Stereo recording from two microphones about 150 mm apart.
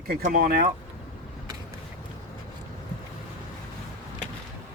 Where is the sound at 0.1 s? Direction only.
80° right.